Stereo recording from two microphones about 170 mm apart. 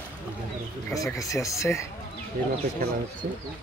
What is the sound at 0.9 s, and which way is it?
Speech, 20° left (ahead or behind).